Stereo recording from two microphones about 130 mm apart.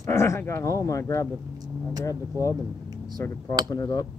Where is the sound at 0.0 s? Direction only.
20° left (ahead or behind).